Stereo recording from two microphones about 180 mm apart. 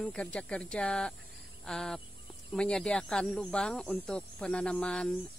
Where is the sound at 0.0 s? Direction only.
5° left (ahead or behind).